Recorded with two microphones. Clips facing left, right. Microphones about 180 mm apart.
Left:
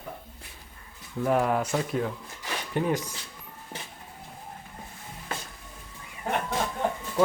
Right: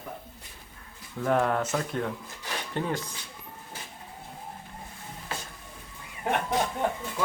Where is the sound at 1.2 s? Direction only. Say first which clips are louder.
Left 1 dB; 5° left (ahead or behind).